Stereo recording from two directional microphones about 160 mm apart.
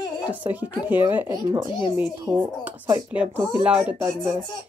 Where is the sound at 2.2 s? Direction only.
10° right (ahead or behind).